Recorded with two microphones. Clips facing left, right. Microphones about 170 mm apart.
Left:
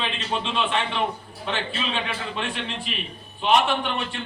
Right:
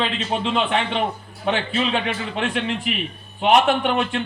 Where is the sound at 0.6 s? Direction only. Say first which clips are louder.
Right 2 dB; 70° right (ahead or behind).